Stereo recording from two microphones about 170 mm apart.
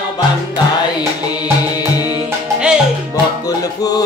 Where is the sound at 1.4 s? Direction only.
20° left (ahead or behind).